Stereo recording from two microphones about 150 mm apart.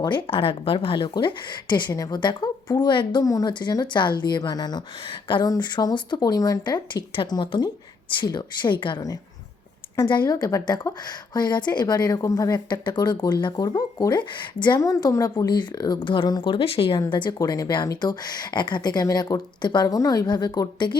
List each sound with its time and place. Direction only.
0.0 s speech: 35° left (ahead or behind)